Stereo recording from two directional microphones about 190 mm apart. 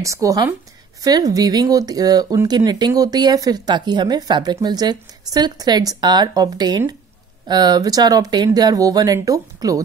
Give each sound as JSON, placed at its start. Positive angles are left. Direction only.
{"t": 0.0, "sound": "speech", "side_deg": -15}